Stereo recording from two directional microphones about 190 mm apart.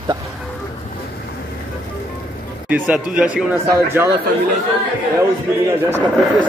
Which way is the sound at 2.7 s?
5° right (ahead or behind).